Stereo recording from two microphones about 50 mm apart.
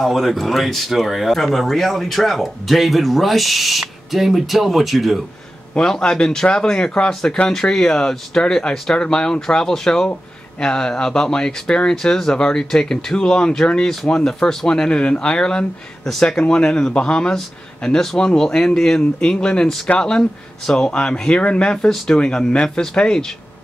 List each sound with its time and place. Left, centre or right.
0.0 s speech: centre
5.8 s speech: centre